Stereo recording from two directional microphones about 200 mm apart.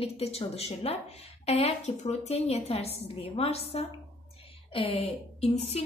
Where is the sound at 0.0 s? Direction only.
30° left (ahead or behind).